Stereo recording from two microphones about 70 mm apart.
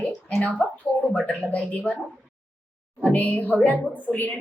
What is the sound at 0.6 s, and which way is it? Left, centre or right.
A woman's voice, centre.